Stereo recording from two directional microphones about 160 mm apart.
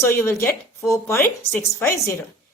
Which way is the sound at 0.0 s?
15° left (ahead or behind).